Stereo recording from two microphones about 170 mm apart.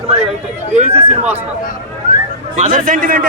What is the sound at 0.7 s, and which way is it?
Speech, 40° right (ahead or behind).